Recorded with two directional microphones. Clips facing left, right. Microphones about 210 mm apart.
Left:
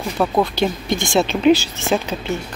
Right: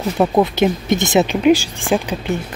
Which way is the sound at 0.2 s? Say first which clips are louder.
Right 3 dB; 20° right (ahead or behind).